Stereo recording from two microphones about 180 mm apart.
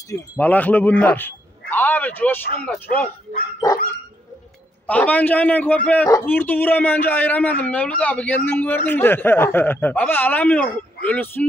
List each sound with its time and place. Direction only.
0.1 s a man's voice: 10° left (ahead or behind)
4.8 s a man's voice: 10° left (ahead or behind)